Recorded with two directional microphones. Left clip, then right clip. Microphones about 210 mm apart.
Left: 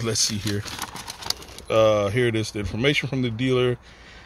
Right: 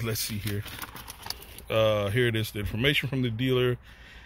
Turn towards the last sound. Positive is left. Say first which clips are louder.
# left 4 dB
turn(degrees=5)  # may be behind; listen again after turning